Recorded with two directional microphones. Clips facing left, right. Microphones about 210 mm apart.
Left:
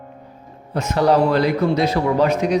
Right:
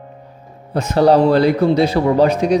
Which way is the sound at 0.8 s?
30° right (ahead or behind).